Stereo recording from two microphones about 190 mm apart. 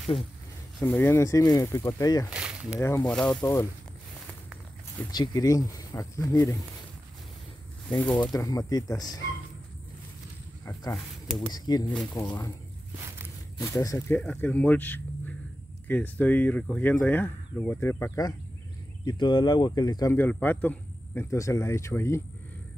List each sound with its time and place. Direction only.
0.7 s speech: 10° left (ahead or behind)
2.3 s a sound: 5° right (ahead or behind)
2.8 s speech: 15° left (ahead or behind)
3.2 s speech: 5° left (ahead or behind)
5.1 s speech: 20° left (ahead or behind)
8.0 s speech: 10° left (ahead or behind)
8.3 s speech: 20° left (ahead or behind)
10.6 s speech: 15° left (ahead or behind)
11.2 s speech: centre (ahead or behind)
11.5 s speech: 20° left (ahead or behind)
13.6 s speech: 15° left (ahead or behind)